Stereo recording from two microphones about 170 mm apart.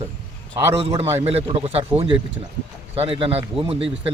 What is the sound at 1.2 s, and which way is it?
A man's voice, 35° right (ahead or behind).